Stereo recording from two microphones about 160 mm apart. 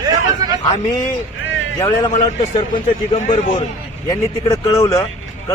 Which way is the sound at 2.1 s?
45° left (ahead or behind).